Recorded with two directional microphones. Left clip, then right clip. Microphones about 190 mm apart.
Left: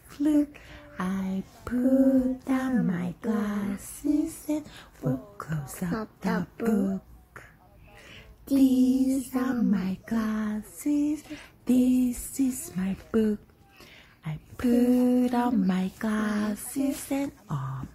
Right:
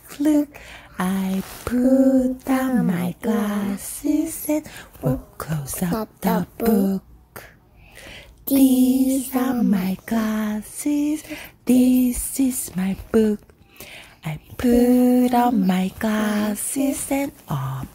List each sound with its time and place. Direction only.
0.1 s female singing: 15° right (ahead or behind)
8.0 s female singing: 20° right (ahead or behind)